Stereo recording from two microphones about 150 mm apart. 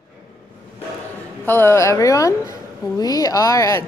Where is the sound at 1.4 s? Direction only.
15° left (ahead or behind).